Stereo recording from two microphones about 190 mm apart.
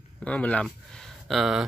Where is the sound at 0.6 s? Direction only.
Centre (ahead or behind).